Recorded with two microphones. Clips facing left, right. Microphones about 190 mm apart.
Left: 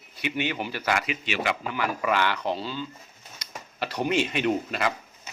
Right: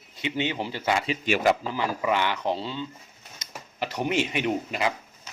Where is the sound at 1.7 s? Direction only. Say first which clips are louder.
Even; 25° right (ahead or behind).